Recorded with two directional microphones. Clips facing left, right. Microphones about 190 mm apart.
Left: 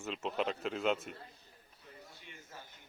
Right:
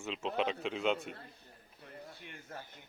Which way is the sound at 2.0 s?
55° right (ahead or behind).